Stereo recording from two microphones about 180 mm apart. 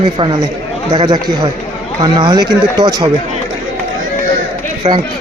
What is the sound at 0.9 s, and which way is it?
Speech, 20° right (ahead or behind).